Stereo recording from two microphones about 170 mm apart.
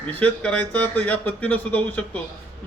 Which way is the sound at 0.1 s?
10° left (ahead or behind).